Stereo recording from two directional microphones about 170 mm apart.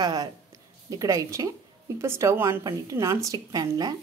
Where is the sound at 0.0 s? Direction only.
25° right (ahead or behind).